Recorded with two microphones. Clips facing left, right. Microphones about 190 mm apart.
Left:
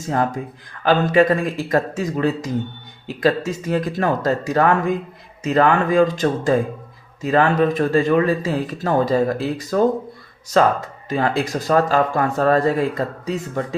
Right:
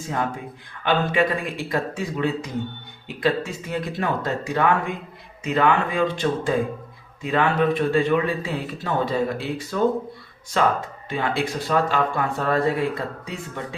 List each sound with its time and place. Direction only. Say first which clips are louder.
0.1 s speech: left 6 dB; 40° left (ahead or behind)